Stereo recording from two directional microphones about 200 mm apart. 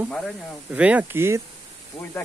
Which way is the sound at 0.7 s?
5° right (ahead or behind).